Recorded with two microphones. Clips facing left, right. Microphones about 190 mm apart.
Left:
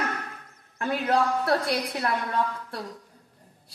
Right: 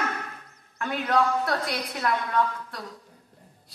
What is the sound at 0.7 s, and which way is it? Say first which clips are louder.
A woman's voice: even; 30° left (ahead or behind).